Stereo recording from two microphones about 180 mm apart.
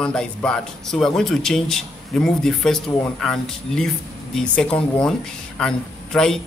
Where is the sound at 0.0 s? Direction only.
5° left (ahead or behind).